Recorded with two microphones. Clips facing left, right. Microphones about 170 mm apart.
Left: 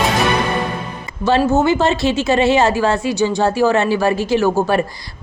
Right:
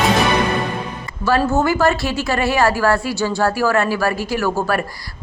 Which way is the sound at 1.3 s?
20° left (ahead or behind).